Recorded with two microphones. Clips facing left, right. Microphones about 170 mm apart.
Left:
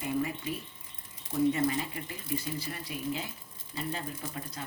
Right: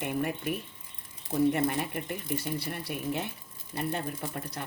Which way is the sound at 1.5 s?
65° right (ahead or behind).